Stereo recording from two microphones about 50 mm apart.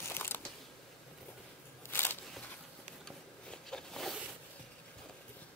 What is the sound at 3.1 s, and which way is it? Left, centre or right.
Zipper, centre.